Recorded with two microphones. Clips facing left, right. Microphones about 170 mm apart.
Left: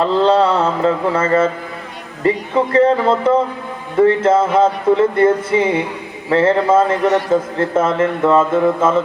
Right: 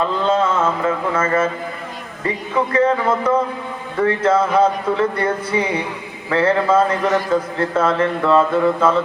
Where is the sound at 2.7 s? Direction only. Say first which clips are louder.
Left 4 dB; 30° left (ahead or behind).